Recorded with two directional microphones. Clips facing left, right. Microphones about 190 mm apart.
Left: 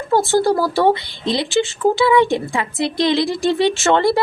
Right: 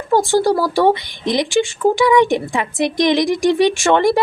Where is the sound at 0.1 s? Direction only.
15° right (ahead or behind).